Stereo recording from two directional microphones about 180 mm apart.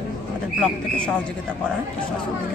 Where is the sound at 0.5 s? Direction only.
5° left (ahead or behind).